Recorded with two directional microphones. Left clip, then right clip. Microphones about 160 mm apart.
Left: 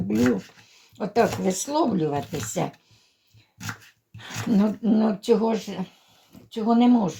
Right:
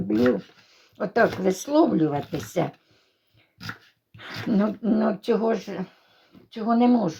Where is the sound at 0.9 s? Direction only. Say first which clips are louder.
Right 1 dB; 35° right (ahead or behind).